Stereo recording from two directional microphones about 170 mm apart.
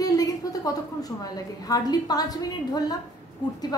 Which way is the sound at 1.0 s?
20° left (ahead or behind).